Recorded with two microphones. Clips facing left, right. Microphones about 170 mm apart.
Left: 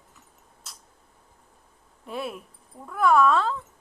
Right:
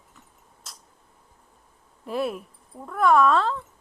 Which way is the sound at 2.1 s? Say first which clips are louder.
Right 5 dB; centre (ahead or behind).